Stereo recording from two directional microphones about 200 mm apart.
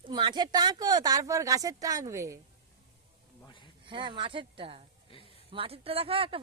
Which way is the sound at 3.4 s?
25° left (ahead or behind).